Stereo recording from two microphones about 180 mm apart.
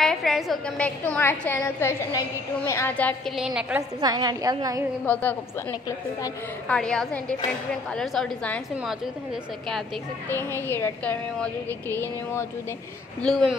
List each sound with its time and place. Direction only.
0.0 s a woman's voice: centre (ahead or behind)
3.3 s a woman's voice: 5° right (ahead or behind)
4.0 s a woman's voice: 20° right (ahead or behind)
5.0 s a woman's voice: 10° left (ahead or behind)
5.7 s a woman's voice: 20° left (ahead or behind)
6.7 s a woman's voice: 5° left (ahead or behind)
10.3 s a woman's voice: 10° left (ahead or behind)